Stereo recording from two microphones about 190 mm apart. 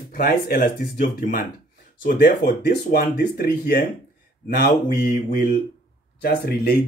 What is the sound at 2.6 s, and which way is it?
Speech, 60° left (ahead or behind).